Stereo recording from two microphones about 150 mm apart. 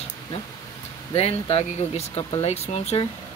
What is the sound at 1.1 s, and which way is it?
Speech, 45° left (ahead or behind).